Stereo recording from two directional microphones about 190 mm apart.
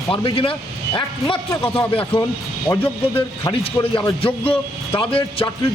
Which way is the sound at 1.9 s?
30° left (ahead or behind).